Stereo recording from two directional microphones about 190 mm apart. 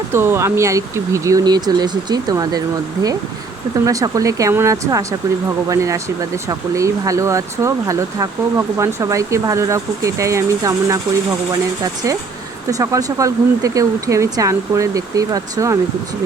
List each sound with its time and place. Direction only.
0.1 s speech: 10° right (ahead or behind)
3.8 s speech: 15° right (ahead or behind)
12.8 s speech: 20° right (ahead or behind)